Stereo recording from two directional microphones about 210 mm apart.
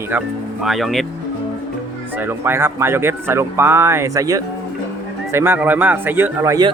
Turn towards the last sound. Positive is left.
turn(degrees=-15)  # may be behind; listen again after turning